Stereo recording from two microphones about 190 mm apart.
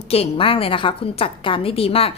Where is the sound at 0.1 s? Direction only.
30° left (ahead or behind).